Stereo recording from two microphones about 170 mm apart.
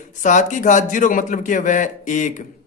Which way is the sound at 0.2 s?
45° left (ahead or behind).